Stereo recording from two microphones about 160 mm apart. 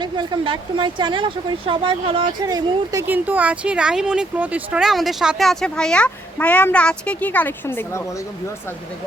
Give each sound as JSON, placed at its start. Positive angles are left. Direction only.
{"t": 0.0, "sound": "speech", "side_deg": -30}
{"t": 3.1, "sound": "speech", "side_deg": -10}